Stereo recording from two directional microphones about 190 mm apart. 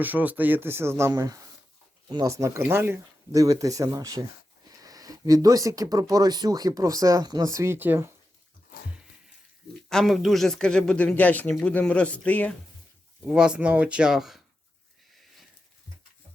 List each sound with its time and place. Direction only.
0.0 s speech: 10° right (ahead or behind)
9.9 s speech: centre (ahead or behind)
13.2 s speech: 5° right (ahead or behind)